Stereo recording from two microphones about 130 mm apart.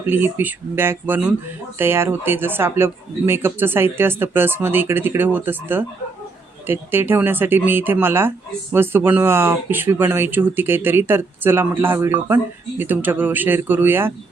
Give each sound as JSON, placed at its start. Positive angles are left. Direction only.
{"t": 0.0, "sound": "speech", "side_deg": -15}